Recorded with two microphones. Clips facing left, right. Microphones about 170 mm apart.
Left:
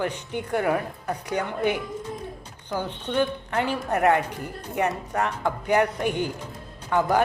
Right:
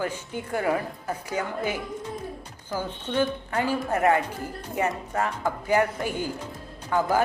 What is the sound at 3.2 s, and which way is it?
Speech, 65° left (ahead or behind).